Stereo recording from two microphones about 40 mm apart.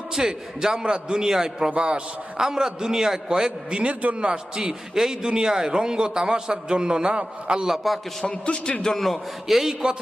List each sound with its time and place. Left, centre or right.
0.1 s a man's voice: centre
3.8 s a man's voice: right
4.9 s a man's voice: centre
7.6 s a man's voice: centre
8.2 s a man's voice: left
9.0 s a man's voice: centre